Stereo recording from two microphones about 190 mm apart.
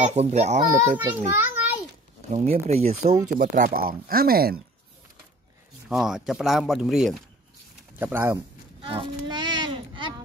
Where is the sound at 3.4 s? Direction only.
45° right (ahead or behind).